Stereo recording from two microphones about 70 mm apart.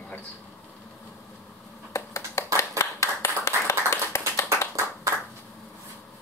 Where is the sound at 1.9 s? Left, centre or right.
Left.